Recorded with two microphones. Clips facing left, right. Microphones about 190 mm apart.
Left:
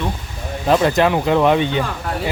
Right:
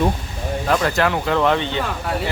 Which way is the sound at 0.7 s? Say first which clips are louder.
Left 5 dB; 20° left (ahead or behind).